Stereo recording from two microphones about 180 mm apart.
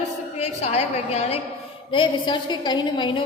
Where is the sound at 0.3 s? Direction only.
35° left (ahead or behind).